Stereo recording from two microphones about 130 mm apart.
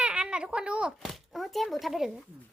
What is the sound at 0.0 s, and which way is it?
A child's voice, 5° right (ahead or behind).